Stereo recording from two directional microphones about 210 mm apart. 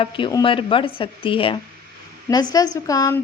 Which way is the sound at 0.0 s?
20° left (ahead or behind).